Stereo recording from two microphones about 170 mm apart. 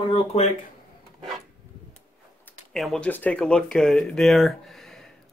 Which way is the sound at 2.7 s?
Centre (ahead or behind).